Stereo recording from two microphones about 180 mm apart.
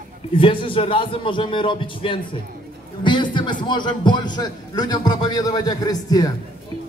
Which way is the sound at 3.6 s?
25° left (ahead or behind).